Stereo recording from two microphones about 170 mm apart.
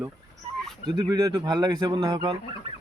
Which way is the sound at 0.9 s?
25° right (ahead or behind).